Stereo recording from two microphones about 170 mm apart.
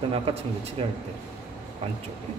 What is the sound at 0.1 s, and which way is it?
Speech, 35° right (ahead or behind).